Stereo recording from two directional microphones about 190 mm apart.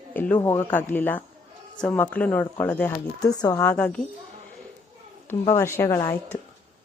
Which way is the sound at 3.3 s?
20° left (ahead or behind).